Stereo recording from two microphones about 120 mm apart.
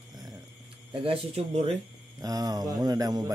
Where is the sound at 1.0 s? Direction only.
55° right (ahead or behind).